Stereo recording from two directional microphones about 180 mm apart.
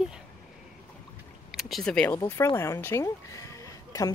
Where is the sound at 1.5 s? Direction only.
Centre (ahead or behind).